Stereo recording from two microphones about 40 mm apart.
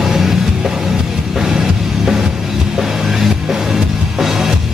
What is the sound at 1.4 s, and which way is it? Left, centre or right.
Music, centre.